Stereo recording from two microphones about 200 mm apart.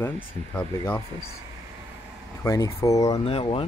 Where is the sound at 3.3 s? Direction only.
25° left (ahead or behind).